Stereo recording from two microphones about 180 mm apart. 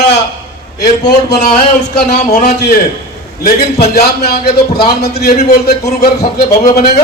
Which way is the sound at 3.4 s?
60° left (ahead or behind).